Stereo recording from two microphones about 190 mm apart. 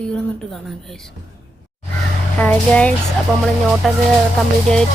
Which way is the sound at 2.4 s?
5° left (ahead or behind).